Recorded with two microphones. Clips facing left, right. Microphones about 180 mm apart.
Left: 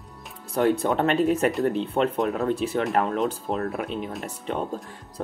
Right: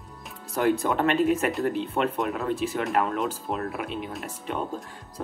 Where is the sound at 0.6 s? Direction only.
35° left (ahead or behind).